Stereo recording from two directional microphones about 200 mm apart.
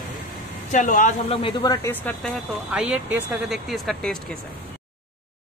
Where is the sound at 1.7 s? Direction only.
10° left (ahead or behind).